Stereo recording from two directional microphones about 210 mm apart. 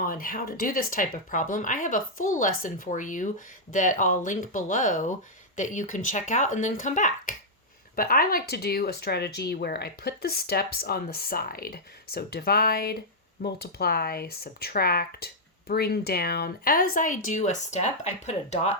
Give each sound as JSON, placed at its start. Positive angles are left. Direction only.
{"t": 0.0, "sound": "speech", "side_deg": 40}